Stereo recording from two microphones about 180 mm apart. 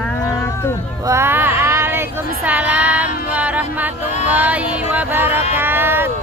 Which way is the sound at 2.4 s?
10° right (ahead or behind).